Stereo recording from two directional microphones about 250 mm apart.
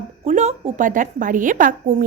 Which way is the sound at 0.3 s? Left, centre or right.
Right.